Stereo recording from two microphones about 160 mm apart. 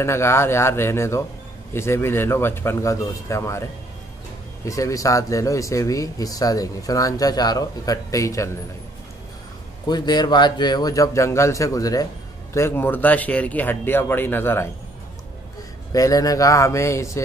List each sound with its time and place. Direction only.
0.0 s speech: 15° left (ahead or behind)
4.6 s speech: 20° left (ahead or behind)
9.8 s speech: 25° left (ahead or behind)
15.9 s speech: 20° left (ahead or behind)